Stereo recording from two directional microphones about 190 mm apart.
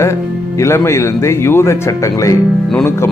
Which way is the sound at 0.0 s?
15° left (ahead or behind).